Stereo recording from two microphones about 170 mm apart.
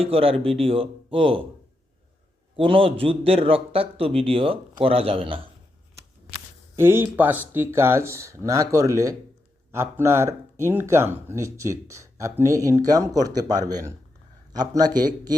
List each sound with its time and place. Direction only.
0.0 s speech: 35° right (ahead or behind)
2.6 s speech: 35° right (ahead or behind)
6.7 s a man's voice: 15° right (ahead or behind)